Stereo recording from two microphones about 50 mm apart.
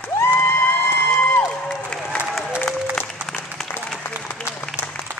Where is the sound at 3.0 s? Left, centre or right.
Left.